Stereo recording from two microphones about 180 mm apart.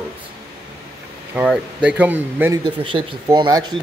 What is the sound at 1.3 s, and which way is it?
Speech, 5° right (ahead or behind).